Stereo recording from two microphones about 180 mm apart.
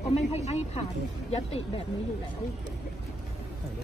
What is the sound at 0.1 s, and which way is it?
Speech, 35° left (ahead or behind).